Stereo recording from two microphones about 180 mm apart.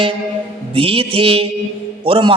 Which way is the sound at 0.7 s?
30° right (ahead or behind).